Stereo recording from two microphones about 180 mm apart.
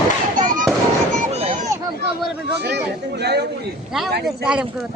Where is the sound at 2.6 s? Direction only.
65° right (ahead or behind).